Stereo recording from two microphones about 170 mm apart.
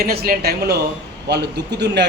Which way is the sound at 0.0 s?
65° right (ahead or behind).